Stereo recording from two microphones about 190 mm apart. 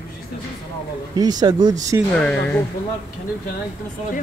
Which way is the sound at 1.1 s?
20° right (ahead or behind).